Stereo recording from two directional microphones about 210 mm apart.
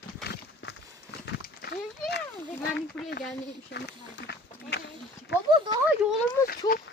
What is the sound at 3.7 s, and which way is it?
Speech, 55° left (ahead or behind).